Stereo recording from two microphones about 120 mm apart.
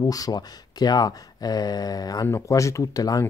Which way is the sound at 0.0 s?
30° left (ahead or behind).